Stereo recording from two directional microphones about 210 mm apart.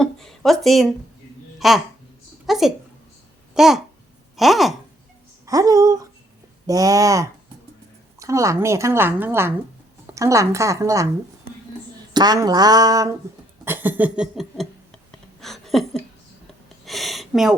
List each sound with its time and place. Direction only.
0.0 s a child's voice: centre (ahead or behind)
5.5 s speech: 15° right (ahead or behind)
12.1 s speech: 20° right (ahead or behind)
13.7 s a sound: 10° right (ahead or behind)